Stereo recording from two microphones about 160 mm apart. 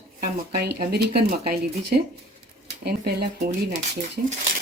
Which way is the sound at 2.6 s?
85° right.